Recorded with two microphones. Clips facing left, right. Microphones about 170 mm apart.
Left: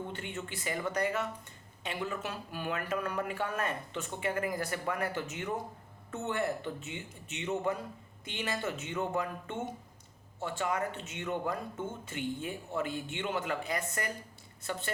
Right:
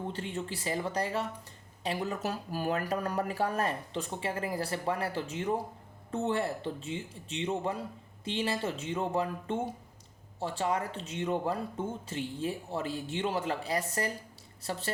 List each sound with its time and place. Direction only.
0.1 s speech: 35° right (ahead or behind)